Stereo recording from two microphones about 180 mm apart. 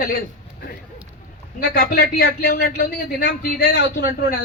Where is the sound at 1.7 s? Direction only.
55° left (ahead or behind).